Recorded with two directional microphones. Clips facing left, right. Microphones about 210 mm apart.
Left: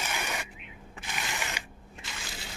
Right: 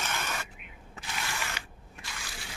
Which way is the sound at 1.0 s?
20° left (ahead or behind).